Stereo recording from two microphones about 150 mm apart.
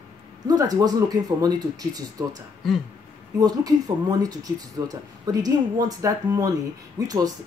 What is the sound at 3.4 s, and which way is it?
Speech, 25° right (ahead or behind).